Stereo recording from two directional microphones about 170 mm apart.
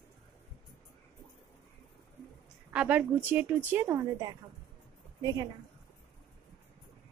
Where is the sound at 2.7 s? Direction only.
5° right (ahead or behind).